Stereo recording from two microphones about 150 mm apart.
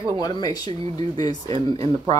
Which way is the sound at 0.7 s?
40° right (ahead or behind).